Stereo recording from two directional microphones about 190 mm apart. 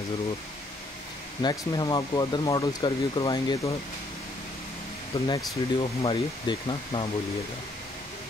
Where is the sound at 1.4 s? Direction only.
20° left (ahead or behind).